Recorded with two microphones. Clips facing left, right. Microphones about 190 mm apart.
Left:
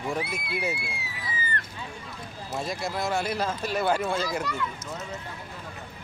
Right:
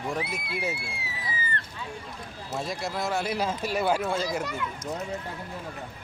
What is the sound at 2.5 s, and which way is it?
Speech, centre (ahead or behind).